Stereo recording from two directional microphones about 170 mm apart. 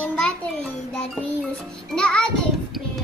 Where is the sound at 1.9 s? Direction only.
5° left (ahead or behind).